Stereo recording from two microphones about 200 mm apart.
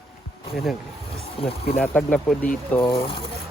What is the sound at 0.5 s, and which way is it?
Speech, centre (ahead or behind).